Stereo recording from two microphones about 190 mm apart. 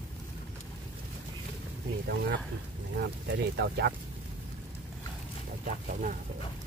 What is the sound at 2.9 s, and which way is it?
Speech, 65° right (ahead or behind).